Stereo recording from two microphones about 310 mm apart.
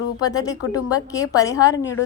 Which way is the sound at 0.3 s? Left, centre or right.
Centre.